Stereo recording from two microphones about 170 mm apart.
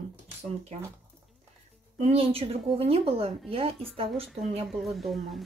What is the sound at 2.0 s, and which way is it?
Speech, 35° right (ahead or behind).